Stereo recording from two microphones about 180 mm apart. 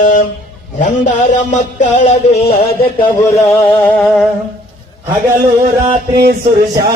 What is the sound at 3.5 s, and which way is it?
Music, 10° left (ahead or behind).